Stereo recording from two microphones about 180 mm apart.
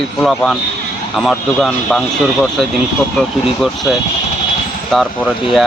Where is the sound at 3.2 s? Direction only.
5° left (ahead or behind).